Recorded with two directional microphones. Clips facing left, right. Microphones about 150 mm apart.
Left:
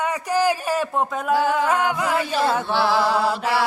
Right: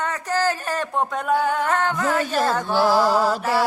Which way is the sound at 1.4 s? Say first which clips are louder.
Left 4 dB; 90° left.